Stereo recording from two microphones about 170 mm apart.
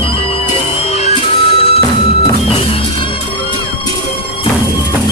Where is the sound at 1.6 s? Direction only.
35° left (ahead or behind).